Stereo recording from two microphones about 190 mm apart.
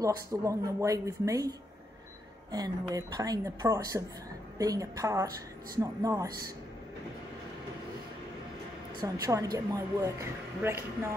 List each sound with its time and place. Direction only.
0.0 s speech: 15° right (ahead or behind)
2.5 s a woman's voice: 20° right (ahead or behind)
9.0 s speech: 15° right (ahead or behind)